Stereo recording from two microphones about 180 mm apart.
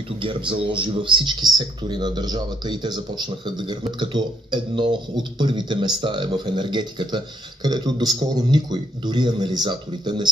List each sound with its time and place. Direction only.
0.2 s speech: 30° right (ahead or behind)